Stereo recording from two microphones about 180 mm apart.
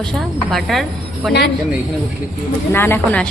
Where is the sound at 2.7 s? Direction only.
10° left (ahead or behind).